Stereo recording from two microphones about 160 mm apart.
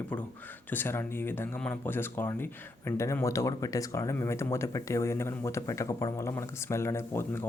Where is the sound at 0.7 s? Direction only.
15° left (ahead or behind).